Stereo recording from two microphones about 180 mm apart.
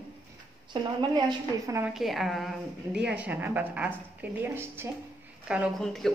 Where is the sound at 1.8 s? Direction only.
Centre (ahead or behind).